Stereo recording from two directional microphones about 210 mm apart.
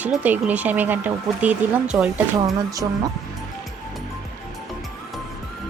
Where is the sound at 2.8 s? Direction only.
20° right (ahead or behind).